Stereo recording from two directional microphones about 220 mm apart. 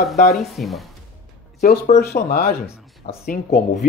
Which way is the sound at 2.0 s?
45° left (ahead or behind).